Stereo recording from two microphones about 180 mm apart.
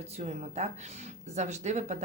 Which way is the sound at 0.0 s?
35° right (ahead or behind).